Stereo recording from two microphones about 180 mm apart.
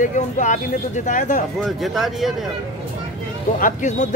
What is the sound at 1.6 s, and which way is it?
Speech, centre (ahead or behind).